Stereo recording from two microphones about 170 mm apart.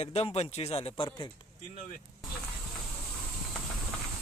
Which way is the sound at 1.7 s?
45° left (ahead or behind).